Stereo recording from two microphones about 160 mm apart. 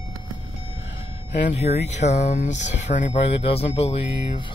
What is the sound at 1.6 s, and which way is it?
Speech, 45° left (ahead or behind).